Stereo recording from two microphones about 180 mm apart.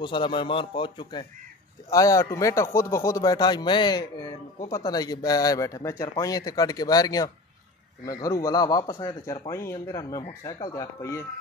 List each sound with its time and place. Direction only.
0.0 s speech: 25° left (ahead or behind)